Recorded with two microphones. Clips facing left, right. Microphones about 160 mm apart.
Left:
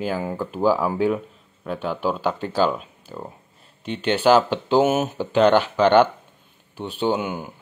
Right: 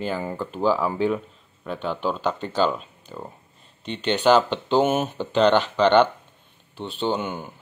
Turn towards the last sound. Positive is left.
turn(degrees=10)  # may be behind; listen again after turning